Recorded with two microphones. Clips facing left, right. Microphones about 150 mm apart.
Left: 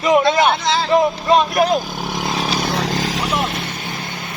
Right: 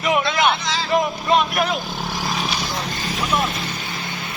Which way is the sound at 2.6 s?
85° left.